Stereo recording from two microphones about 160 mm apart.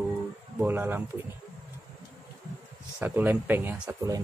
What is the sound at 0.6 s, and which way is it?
Speech, 10° right (ahead or behind).